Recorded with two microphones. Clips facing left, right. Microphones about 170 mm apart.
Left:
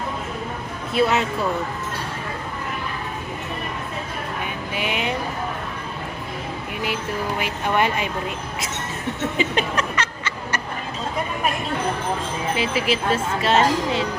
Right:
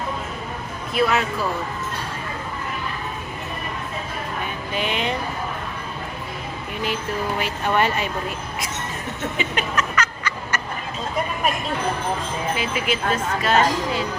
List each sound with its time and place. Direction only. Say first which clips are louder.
0.9 s speech: left 1 dB; 25° left (ahead or behind)
4.7 s speech: right 1 dB; 10° left (ahead or behind)
6.8 s speech: right 1 dB; 15° left (ahead or behind)
9.4 s a sound: left 2 dB; 30° left (ahead or behind)
12.5 s speech: left 2 dB; 30° left (ahead or behind)